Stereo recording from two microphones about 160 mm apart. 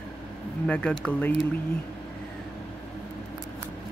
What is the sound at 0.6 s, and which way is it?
Speech, 5° left (ahead or behind).